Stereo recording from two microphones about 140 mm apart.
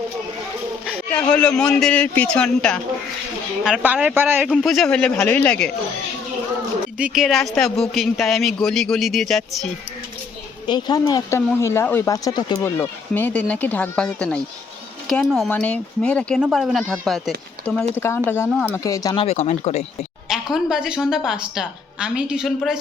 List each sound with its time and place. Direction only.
1.3 s speech: 10° left (ahead or behind)
3.6 s speech: 5° right (ahead or behind)
4.4 s speech: centre (ahead or behind)
7.0 s a woman's voice: 5° right (ahead or behind)
10.7 s speech: 30° left (ahead or behind)
12.6 s speech: 15° left (ahead or behind)
15.4 s speech: 10° left (ahead or behind)
16.4 s a woman's voice: 5° right (ahead or behind)
17.9 s speech: 20° left (ahead or behind)
19.1 s speech: 45° left (ahead or behind)
20.3 s a woman's voice: 5° right (ahead or behind)